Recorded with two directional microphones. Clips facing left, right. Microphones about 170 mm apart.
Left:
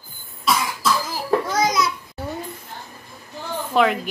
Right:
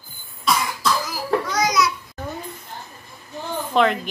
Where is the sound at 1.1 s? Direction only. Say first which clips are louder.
Left 1 dB; 25° left (ahead or behind).